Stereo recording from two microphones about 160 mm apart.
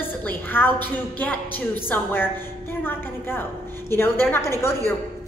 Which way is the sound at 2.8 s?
15° left (ahead or behind).